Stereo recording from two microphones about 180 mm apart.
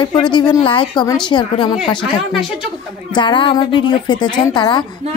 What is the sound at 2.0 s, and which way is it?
Speech, centre (ahead or behind).